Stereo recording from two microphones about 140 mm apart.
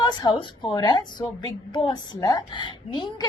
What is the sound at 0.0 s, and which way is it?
A woman's voice, 30° left (ahead or behind).